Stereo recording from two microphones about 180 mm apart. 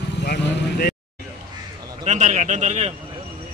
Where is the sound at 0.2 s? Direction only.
65° left (ahead or behind).